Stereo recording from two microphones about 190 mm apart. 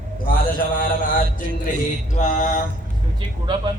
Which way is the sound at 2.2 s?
40° left (ahead or behind).